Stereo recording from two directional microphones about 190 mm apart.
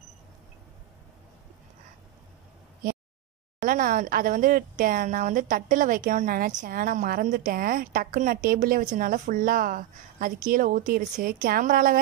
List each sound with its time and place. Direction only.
3.6 s a woman's voice: 45° right (ahead or behind)